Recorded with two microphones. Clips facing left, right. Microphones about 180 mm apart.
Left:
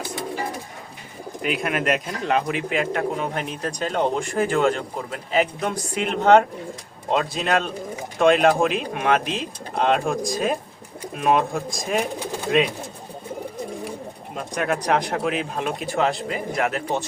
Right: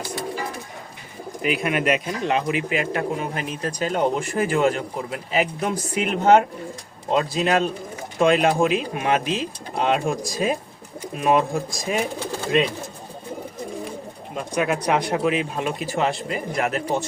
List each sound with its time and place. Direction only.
1.4 s speech: centre (ahead or behind)
14.3 s speech: centre (ahead or behind)